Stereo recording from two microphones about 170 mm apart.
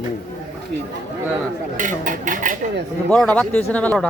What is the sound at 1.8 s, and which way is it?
Speech, 50° right (ahead or behind).